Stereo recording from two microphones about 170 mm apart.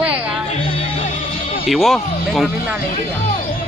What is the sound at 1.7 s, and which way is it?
Speech, centre (ahead or behind).